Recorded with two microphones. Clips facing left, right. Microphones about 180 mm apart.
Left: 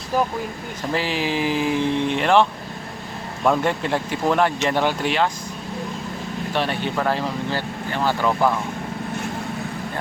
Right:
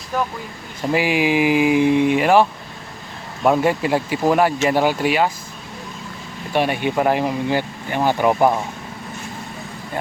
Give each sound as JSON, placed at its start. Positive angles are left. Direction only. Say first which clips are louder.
{"t": 0.9, "sound": "speech", "louder": "right 6 dB", "side_deg": -15}
{"t": 6.5, "sound": "speech", "louder": "right 5 dB", "side_deg": -15}